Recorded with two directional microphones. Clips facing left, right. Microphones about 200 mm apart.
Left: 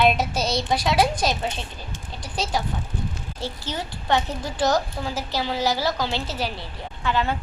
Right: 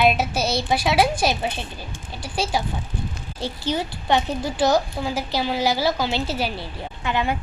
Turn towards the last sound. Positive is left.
turn(degrees=-15)  # may be behind; listen again after turning